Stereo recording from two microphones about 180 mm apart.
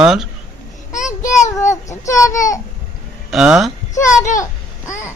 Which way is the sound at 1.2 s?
40° left (ahead or behind).